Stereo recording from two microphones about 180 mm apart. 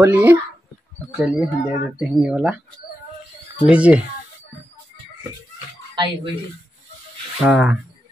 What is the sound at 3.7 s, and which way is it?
Speech, 5° right (ahead or behind).